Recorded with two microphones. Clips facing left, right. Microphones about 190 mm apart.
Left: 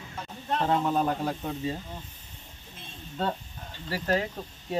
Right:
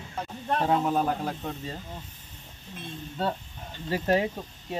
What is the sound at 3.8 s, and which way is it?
Speech, 20° right (ahead or behind).